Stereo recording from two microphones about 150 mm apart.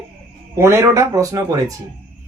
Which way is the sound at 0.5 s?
20° right (ahead or behind).